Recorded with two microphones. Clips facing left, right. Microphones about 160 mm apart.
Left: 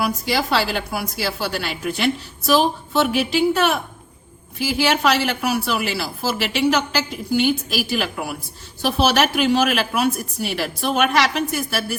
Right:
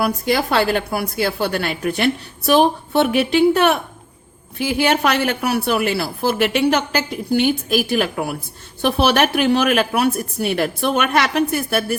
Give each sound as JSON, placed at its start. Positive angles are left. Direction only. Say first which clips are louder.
{"t": 0.0, "sound": "a woman's voice", "louder": "right 3 dB", "side_deg": -55}